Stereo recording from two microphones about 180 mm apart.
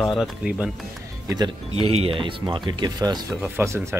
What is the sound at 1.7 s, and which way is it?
Speech, 35° right (ahead or behind).